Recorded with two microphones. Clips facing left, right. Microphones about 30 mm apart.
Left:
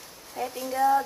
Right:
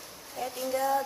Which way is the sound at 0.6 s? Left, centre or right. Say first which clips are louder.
Left 5 dB; centre.